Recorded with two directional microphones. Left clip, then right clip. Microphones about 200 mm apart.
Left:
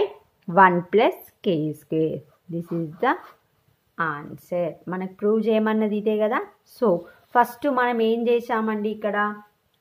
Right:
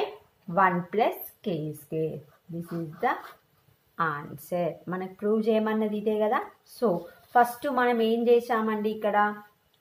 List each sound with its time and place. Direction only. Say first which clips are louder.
0.5 s speech: left 8 dB; 45° left (ahead or behind)
3.9 s a woman's voice: left 2 dB; 25° left (ahead or behind)